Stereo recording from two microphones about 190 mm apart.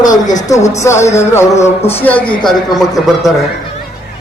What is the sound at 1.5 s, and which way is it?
Speech, 35° left (ahead or behind).